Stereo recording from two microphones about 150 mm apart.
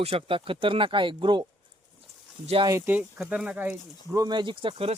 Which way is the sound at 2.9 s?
10° right (ahead or behind).